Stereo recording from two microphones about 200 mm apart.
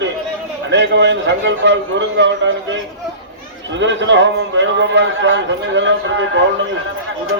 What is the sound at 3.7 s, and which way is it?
A man's voice, 65° right (ahead or behind).